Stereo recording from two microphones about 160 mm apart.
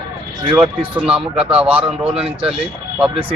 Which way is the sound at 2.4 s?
35° right (ahead or behind).